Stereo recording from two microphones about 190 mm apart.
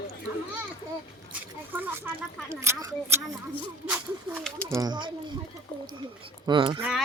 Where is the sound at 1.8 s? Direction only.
10° right (ahead or behind).